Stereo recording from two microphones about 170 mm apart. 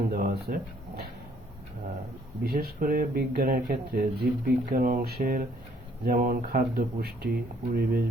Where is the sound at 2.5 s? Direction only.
60° right (ahead or behind).